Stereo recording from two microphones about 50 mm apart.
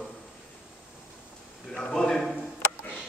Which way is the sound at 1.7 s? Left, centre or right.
Centre.